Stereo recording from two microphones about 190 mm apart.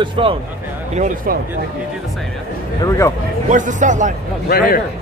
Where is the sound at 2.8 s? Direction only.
15° left (ahead or behind).